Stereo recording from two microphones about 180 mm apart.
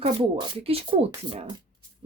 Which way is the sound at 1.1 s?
25° right (ahead or behind).